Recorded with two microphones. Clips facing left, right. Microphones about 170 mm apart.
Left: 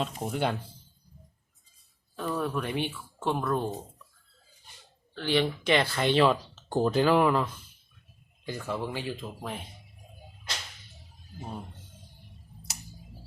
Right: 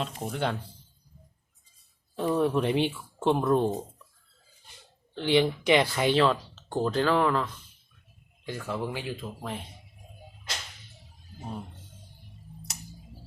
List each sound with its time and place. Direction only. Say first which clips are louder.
0.0 s speech: left 1 dB; 5° left (ahead or behind)
2.1 s speech: right 6 dB; 25° right (ahead or behind)
5.1 s speech: right 3 dB; 20° right (ahead or behind)
6.1 s speech: left 1 dB; 5° left (ahead or behind)